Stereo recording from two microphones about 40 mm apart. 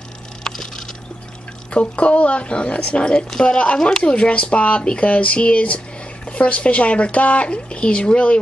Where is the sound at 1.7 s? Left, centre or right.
Left.